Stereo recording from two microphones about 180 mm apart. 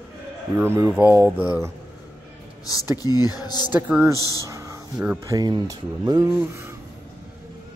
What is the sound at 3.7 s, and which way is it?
Speech, 10° right (ahead or behind).